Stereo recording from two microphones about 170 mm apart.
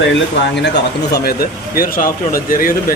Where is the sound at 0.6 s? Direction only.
80° left.